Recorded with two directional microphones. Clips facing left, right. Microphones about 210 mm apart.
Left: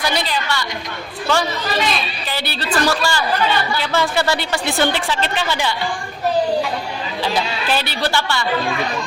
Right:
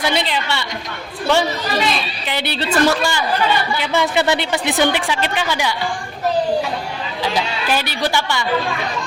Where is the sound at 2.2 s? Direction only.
20° right (ahead or behind).